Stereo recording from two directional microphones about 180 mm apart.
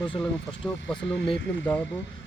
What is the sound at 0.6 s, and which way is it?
Speech, 5° left (ahead or behind).